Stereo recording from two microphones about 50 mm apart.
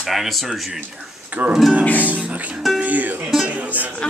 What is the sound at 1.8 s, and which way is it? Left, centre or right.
Speech, left.